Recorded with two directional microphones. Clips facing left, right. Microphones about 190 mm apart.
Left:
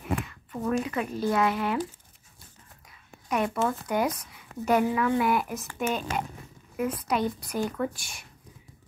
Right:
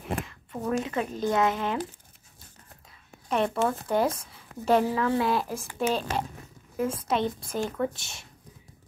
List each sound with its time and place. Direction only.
0.1 s a sound: 30° right (ahead or behind)
1.2 s speech: 20° right (ahead or behind)
1.5 s speech: 5° left (ahead or behind)
3.3 s speech: 10° left (ahead or behind)
3.5 s speech: 25° right (ahead or behind)